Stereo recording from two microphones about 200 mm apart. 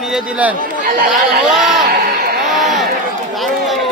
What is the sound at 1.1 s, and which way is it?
Speech, centre (ahead or behind).